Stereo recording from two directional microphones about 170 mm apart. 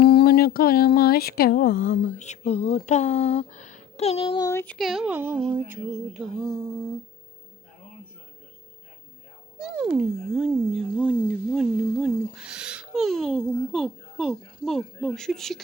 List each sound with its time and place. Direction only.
0.0 s a sound: 70° left (ahead or behind)
2.1 s speech: 45° left (ahead or behind)
4.4 s a child's voice: 10° left (ahead or behind); by 5.4 s 10° right (ahead or behind)
5.5 s music: 10° right (ahead or behind)
9.6 s a child's voice: 5° right (ahead or behind)